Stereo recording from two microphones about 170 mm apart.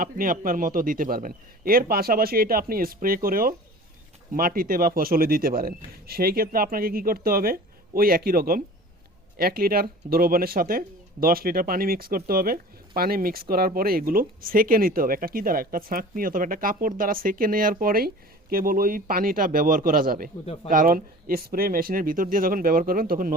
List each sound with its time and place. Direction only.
0.0 s speech: 55° right (ahead or behind)